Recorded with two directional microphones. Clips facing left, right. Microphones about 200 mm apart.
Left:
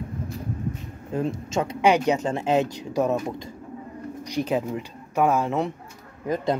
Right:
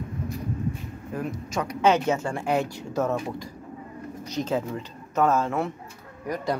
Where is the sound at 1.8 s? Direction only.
15° left (ahead or behind).